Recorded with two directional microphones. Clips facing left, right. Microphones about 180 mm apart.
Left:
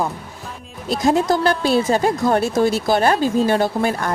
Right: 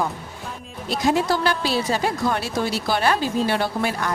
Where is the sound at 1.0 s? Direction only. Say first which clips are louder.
Left 4 dB; 45° left (ahead or behind).